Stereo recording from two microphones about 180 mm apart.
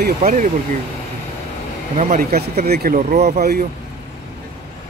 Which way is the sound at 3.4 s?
60° right (ahead or behind).